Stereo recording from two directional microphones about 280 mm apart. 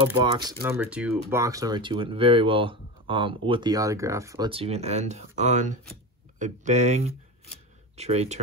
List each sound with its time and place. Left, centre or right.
0.0 s speech: centre